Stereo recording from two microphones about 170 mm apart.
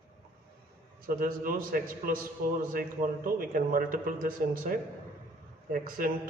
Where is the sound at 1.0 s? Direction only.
55° right (ahead or behind).